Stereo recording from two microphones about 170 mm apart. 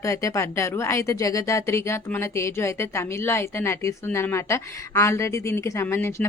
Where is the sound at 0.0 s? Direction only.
20° left (ahead or behind).